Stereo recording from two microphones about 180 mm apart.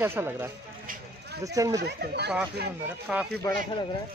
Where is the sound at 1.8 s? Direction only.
65° right (ahead or behind).